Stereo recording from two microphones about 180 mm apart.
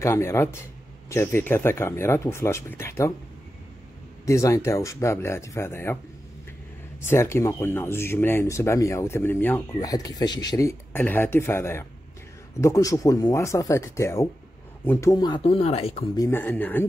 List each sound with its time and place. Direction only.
0.0 s speech: 15° left (ahead or behind)
4.3 s speech: 15° left (ahead or behind)
7.0 s speech: 15° left (ahead or behind); by 16.1 s 35° left (ahead or behind)
16.2 s speech: 10° left (ahead or behind)